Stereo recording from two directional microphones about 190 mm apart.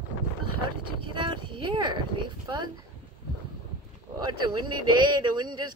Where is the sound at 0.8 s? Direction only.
25° right (ahead or behind).